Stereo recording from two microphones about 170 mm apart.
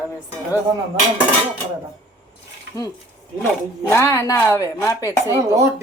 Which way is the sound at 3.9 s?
15° left (ahead or behind).